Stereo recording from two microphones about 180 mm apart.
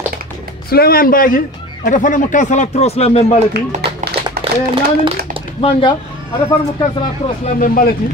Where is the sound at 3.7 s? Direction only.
40° right (ahead or behind).